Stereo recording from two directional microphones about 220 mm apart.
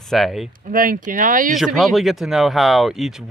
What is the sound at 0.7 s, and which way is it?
Speech, 40° right (ahead or behind).